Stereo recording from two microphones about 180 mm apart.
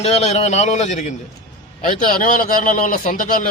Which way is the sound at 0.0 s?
35° left (ahead or behind).